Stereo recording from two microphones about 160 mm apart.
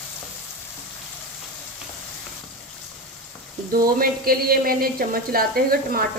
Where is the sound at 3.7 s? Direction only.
65° right (ahead or behind).